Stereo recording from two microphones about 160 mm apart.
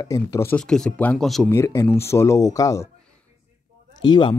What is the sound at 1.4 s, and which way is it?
Speech, 15° left (ahead or behind).